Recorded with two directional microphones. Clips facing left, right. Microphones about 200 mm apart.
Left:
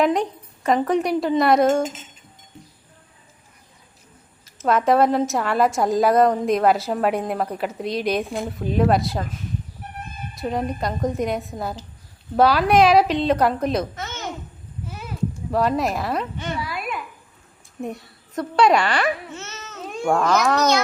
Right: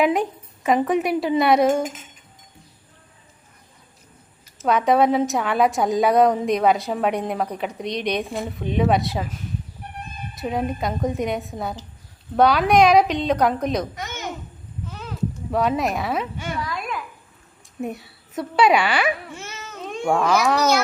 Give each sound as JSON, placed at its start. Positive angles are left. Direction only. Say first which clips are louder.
{"t": 0.0, "sound": "a woman's voice", "louder": "even", "side_deg": -5}
{"t": 1.8, "sound": "chink", "louder": "left 2 dB", "side_deg": 25}
{"t": 4.5, "sound": "a woman's voice", "louder": "even", "side_deg": 0}
{"t": 10.3, "sound": "a woman's voice", "louder": "even", "side_deg": 0}
{"t": 13.9, "sound": "a child's voice", "louder": "even", "side_deg": -15}
{"t": 14.8, "sound": "a sound", "louder": "even", "side_deg": 10}
{"t": 15.5, "sound": "a woman's voice", "louder": "even", "side_deg": 0}
{"t": 16.6, "sound": "a woman's voice", "louder": "even", "side_deg": 5}
{"t": 19.8, "sound": "a child's voice", "louder": "even", "side_deg": 0}